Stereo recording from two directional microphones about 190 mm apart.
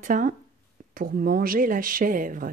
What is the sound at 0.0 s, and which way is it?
Speech, 45° right (ahead or behind).